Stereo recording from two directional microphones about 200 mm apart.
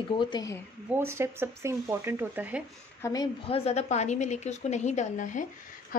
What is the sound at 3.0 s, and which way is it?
Speech, 15° left (ahead or behind).